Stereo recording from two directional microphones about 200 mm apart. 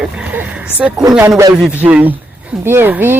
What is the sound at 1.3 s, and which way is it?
Speech, 20° right (ahead or behind).